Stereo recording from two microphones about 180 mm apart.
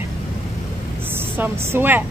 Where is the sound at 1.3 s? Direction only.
10° right (ahead or behind).